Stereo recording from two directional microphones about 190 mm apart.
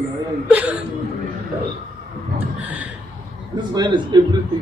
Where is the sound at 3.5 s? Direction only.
25° right (ahead or behind).